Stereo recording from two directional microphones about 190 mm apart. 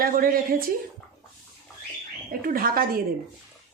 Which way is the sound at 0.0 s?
50° right (ahead or behind).